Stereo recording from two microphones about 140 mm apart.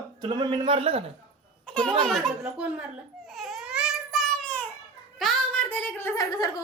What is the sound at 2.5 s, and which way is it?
Speech, 10° right (ahead or behind).